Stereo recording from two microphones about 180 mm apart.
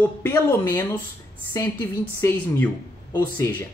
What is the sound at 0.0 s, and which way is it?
Speech, 15° left (ahead or behind).